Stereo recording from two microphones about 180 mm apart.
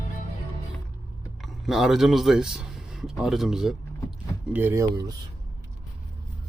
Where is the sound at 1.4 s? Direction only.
Centre (ahead or behind).